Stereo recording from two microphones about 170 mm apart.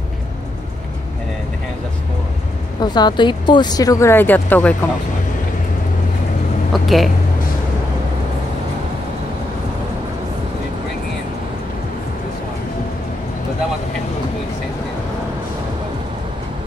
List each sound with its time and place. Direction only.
2.8 s speech: 25° left (ahead or behind); by 4.7 s 10° left (ahead or behind)
6.7 s speech: centre (ahead or behind)